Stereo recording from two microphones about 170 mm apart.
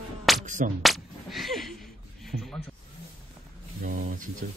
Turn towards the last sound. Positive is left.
turn(degrees=-55)  # may be behind; listen again after turning